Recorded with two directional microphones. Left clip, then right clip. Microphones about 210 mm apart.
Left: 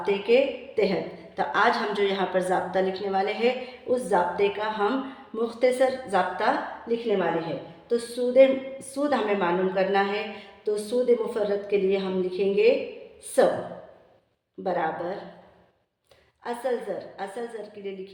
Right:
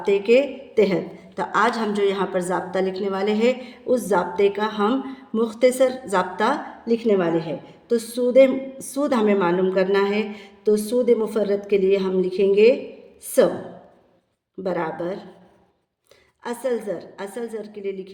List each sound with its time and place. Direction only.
0.0 s a woman's voice: 45° right (ahead or behind)
1.4 s a woman's voice: 35° right (ahead or behind)
14.6 s a woman's voice: 45° right (ahead or behind)
16.4 s a woman's voice: 45° right (ahead or behind)